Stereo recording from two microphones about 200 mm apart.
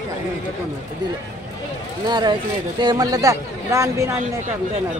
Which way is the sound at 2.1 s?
20° right (ahead or behind).